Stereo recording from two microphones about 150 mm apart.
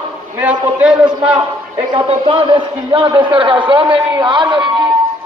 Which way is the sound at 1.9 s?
35° right (ahead or behind).